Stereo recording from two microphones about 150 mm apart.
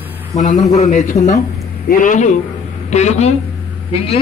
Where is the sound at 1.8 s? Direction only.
65° left (ahead or behind).